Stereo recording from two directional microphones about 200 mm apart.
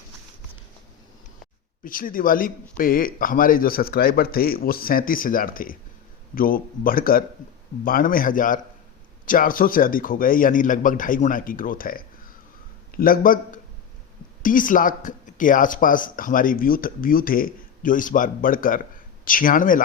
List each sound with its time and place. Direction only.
1.8 s speech: 45° left (ahead or behind)